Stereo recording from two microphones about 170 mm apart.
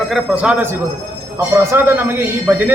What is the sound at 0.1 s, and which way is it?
A man's voice, 5° right (ahead or behind).